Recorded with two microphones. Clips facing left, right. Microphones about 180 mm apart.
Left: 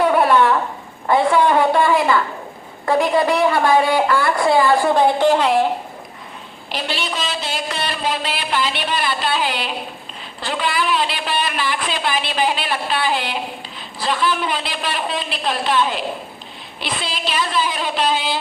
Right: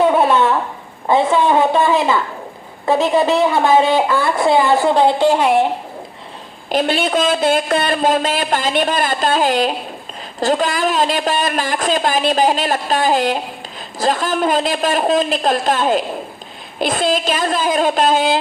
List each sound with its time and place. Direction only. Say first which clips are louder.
0.0 s a sound: right 1 dB; 25° right (ahead or behind)
2.8 s speech: right 2 dB; 20° right (ahead or behind)
6.7 s a man's voice: right 9 dB; 50° right (ahead or behind)